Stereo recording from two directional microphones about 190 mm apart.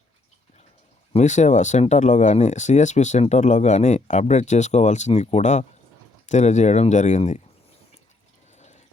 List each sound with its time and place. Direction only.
1.1 s speech: 40° left (ahead or behind)
8.5 s water: 40° left (ahead or behind)